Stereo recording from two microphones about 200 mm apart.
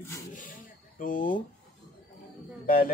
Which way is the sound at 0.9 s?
45° left (ahead or behind).